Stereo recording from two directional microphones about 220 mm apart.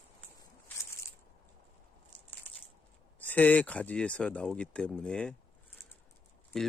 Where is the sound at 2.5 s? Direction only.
10° left (ahead or behind).